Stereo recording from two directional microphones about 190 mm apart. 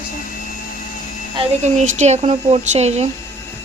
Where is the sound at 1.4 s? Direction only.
40° right (ahead or behind).